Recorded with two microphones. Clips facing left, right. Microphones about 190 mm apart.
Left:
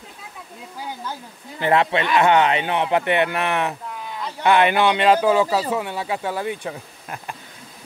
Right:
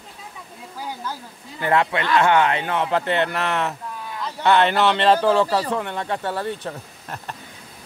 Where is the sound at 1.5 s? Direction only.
20° left (ahead or behind).